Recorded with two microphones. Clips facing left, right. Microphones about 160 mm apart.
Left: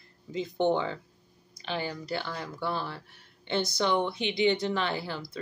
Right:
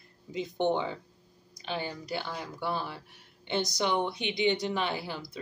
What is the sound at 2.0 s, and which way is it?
Speech, 15° right (ahead or behind).